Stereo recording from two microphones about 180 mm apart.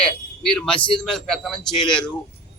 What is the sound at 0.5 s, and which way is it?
Speech, 5° left (ahead or behind).